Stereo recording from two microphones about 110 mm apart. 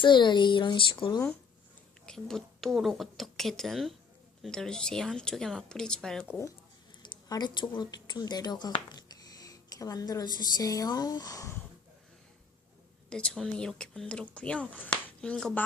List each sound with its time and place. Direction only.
0.0 s a child's voice: 45° left (ahead or behind)
2.0 s speech: 5° left (ahead or behind)
7.0 s speech: 40° left (ahead or behind)
13.1 s speech: 10° left (ahead or behind)